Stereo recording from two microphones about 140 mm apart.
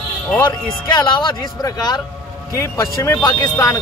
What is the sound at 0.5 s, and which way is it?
Speech, 35° left (ahead or behind).